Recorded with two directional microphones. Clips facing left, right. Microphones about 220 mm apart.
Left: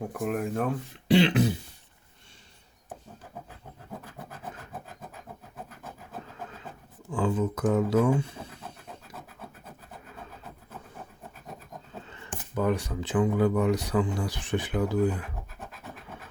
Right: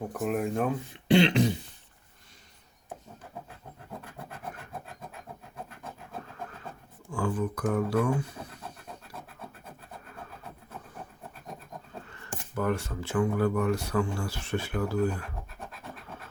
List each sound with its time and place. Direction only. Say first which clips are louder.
0.1 s speech: right 2 dB; centre (ahead or behind)
7.1 s speech: left 3 dB; 20° left (ahead or behind)
12.5 s speech: left 2 dB; 15° left (ahead or behind)